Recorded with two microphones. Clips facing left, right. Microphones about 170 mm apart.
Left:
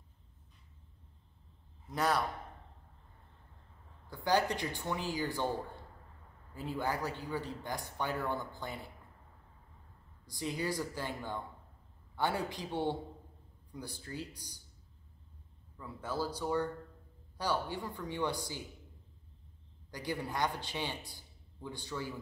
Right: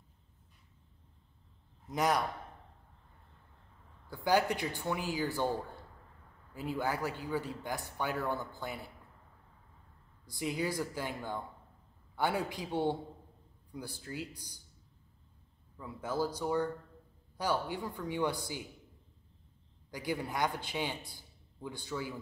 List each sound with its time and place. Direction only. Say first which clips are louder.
1.9 s a man's voice: right 1 dB; 15° right (ahead or behind)
4.1 s a man's voice: right 2 dB; 10° right (ahead or behind)
6.5 s a man's voice: right 1 dB; 10° right (ahead or behind)
10.4 s a man's voice: right 2 dB; 10° right (ahead or behind)
15.8 s a man's voice: right 3 dB; 15° right (ahead or behind)
19.9 s a man's voice: right 2 dB; 10° right (ahead or behind)